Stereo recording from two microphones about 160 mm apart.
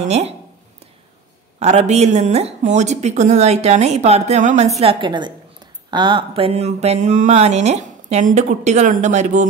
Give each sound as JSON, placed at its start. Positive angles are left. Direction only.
{"t": 1.6, "sound": "speech", "side_deg": -45}